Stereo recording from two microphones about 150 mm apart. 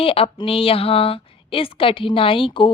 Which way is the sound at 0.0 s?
35° left (ahead or behind).